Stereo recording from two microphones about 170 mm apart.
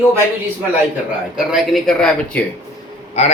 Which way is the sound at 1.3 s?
Centre (ahead or behind).